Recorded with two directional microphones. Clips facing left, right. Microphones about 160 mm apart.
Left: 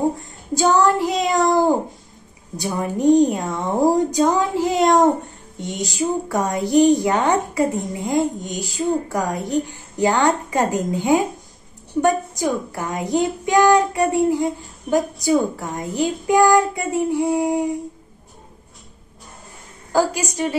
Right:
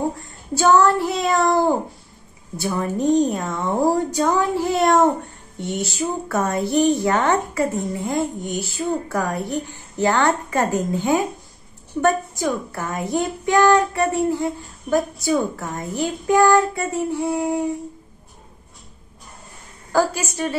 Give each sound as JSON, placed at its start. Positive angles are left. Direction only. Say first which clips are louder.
{"t": 0.6, "sound": "a child's voice", "louder": "right 1 dB", "side_deg": 15}
{"t": 19.9, "sound": "a child's voice", "louder": "left 1 dB", "side_deg": 15}